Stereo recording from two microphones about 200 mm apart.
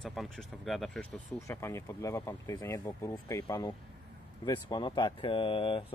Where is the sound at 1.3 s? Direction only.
15° left (ahead or behind).